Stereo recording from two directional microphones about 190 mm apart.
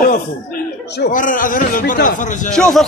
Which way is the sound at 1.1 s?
45° left (ahead or behind).